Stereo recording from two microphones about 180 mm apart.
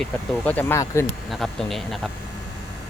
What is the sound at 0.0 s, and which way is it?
Speech, 10° left (ahead or behind).